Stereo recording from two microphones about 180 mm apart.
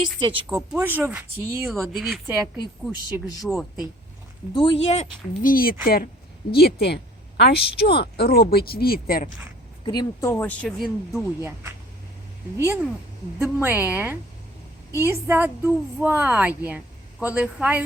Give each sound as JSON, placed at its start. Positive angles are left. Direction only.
{"t": 0.4, "sound": "a woman's voice", "side_deg": -10}
{"t": 1.6, "sound": "speech", "side_deg": 0}
{"t": 3.5, "sound": "speech", "side_deg": 0}
{"t": 4.5, "sound": "speech", "side_deg": 30}
{"t": 5.4, "sound": "a woman's voice", "side_deg": 50}
{"t": 9.8, "sound": "speech", "side_deg": 25}
{"t": 11.3, "sound": "a woman's voice", "side_deg": -15}